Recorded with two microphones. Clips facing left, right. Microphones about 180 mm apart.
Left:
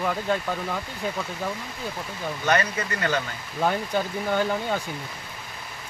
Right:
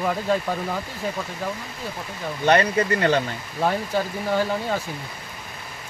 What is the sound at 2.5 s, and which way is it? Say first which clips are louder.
Speech: right 6 dB; 30° right (ahead or behind).